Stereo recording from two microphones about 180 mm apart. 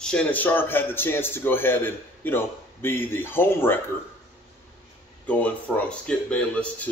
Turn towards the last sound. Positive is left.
turn(degrees=5)  # may be behind; listen again after turning